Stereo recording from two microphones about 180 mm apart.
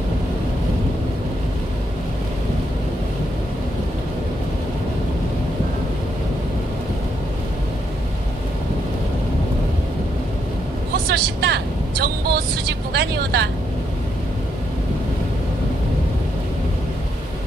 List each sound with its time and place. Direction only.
11.1 s vehicle: 65° right (ahead or behind)
12.9 s speech: 65° right (ahead or behind)